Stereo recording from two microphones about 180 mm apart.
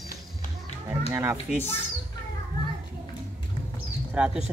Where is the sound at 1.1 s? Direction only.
15° right (ahead or behind).